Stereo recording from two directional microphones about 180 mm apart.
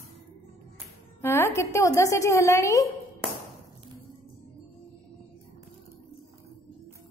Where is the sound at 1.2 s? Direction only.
15° left (ahead or behind).